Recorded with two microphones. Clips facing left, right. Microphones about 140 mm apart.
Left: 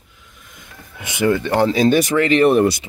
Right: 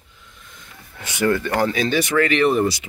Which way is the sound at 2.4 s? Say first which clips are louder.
Left 4 dB; 60° left (ahead or behind).